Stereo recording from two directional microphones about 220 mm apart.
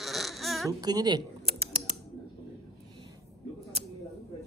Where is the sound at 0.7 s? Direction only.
15° right (ahead or behind).